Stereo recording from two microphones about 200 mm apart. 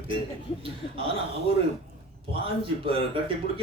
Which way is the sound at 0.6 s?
25° right (ahead or behind).